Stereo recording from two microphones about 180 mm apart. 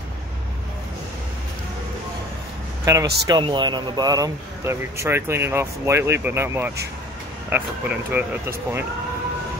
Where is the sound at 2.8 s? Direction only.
20° right (ahead or behind).